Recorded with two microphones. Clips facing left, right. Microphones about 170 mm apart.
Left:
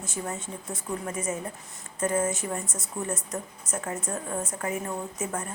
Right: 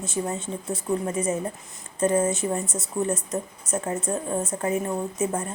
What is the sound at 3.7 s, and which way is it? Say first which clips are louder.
Speech: right 5 dB; 35° right (ahead or behind).